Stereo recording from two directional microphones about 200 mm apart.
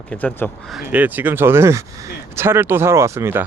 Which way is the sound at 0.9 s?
10° right (ahead or behind).